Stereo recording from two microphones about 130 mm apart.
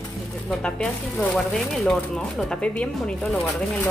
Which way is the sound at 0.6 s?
5° left (ahead or behind).